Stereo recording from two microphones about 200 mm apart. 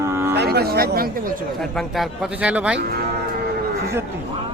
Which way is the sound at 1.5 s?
Centre (ahead or behind).